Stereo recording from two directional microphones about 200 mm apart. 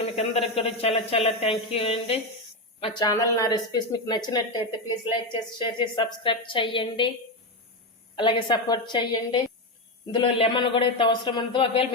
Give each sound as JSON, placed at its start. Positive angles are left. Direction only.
{"t": 0.2, "sound": "speech", "side_deg": 30}
{"t": 8.1, "sound": "speech", "side_deg": 25}